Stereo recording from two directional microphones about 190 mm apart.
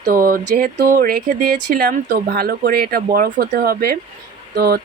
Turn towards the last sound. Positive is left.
turn(degrees=-55)  # may be behind; listen again after turning